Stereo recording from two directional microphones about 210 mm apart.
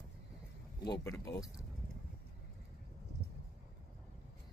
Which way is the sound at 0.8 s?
15° left (ahead or behind).